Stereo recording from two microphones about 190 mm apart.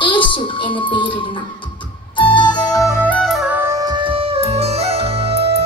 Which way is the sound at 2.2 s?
25° left (ahead or behind).